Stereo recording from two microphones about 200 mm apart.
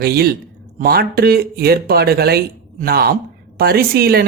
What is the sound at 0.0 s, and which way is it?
Speech, 50° right (ahead or behind).